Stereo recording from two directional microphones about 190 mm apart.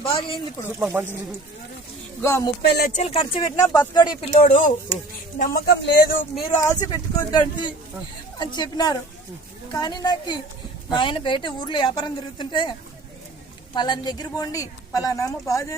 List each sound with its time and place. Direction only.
0.0 s speech: 30° left (ahead or behind)
0.8 s speech: 10° right (ahead or behind)
2.2 s a woman's voice: 15° left (ahead or behind)
2.6 s speech: 60° left (ahead or behind)
2.9 s speech: 30° left (ahead or behind)
5.4 s speech: 55° left (ahead or behind)
6.6 s speech: 20° left (ahead or behind)
13.7 s a woman's voice: 25° left (ahead or behind)